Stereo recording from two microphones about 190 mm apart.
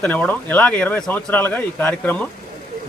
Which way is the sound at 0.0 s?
10° left (ahead or behind).